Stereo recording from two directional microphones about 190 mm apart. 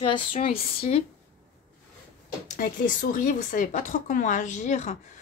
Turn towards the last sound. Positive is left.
turn(degrees=40)  # may be behind; listen again after turning